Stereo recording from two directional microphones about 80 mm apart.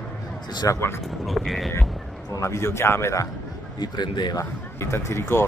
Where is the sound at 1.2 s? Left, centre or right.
Centre.